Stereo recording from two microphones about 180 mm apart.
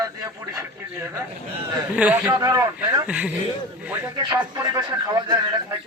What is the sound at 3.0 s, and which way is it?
A man's voice, 5° right (ahead or behind).